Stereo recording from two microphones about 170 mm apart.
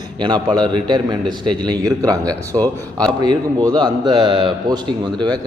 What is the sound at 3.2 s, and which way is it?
A man's voice, 25° right (ahead or behind).